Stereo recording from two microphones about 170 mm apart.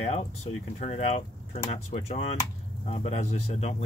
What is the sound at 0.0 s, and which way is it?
Speech, 35° left (ahead or behind).